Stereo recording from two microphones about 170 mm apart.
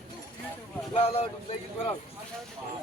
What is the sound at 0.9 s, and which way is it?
Speech, 35° left (ahead or behind).